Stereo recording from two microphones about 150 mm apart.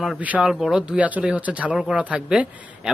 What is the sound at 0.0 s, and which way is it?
Speech, 5° right (ahead or behind).